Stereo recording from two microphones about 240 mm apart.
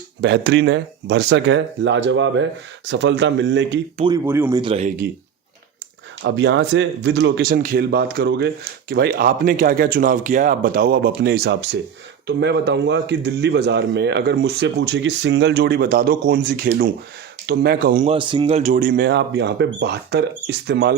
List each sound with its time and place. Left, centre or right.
0.2 s a man's voice: right
3.9 s speech: centre
4.3 s speech: centre
4.6 s speech: right
6.2 s a man's voice: right
18.1 s a man's voice: centre; by 20.9 s right